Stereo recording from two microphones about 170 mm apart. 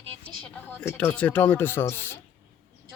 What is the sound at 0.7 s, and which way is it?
Speech, 15° left (ahead or behind).